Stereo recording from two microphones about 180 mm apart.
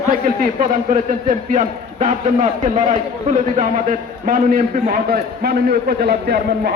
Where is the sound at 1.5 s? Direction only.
45° right (ahead or behind).